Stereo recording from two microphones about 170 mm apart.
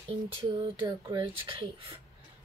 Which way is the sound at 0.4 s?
30° right (ahead or behind).